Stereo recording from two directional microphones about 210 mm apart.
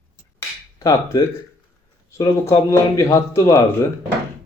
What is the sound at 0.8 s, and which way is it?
Speech, 15° left (ahead or behind).